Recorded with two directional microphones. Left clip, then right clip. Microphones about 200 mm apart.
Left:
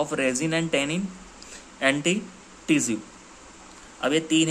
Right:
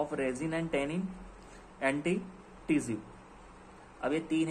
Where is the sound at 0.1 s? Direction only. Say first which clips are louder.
Left 9 dB; 30° left (ahead or behind).